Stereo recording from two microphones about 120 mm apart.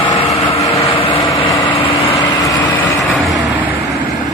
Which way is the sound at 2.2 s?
35° left (ahead or behind).